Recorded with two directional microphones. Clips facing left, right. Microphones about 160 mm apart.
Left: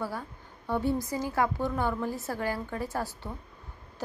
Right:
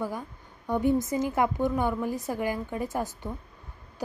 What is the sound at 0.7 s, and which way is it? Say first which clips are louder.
A woman's voice: right 4 dB; 15° right (ahead or behind).